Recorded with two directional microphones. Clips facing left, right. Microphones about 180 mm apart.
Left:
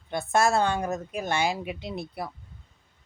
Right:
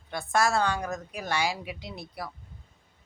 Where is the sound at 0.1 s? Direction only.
25° left (ahead or behind).